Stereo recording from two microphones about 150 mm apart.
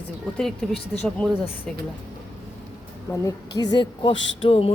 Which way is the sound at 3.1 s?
20° left (ahead or behind).